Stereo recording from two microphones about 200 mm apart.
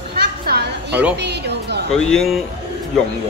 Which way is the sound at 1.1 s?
55° right (ahead or behind).